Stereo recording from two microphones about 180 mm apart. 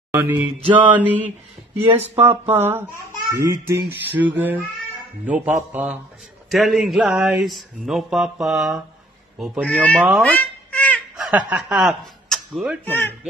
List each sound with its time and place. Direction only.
0.1 s mantra: 10° right (ahead or behind)
0.8 s speech: 10° right (ahead or behind)
10.3 s a sound: 10° left (ahead or behind)
11.1 s speech: 5° right (ahead or behind)
12.8 s speech: 10° left (ahead or behind)